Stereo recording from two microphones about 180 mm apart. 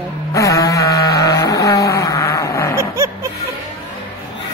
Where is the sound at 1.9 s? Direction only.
15° left (ahead or behind).